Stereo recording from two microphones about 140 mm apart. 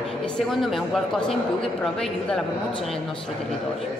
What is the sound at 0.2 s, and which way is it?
A woman's voice, centre (ahead or behind).